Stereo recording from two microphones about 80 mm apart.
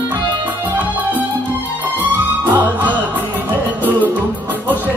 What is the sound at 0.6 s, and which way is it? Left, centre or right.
Music, right.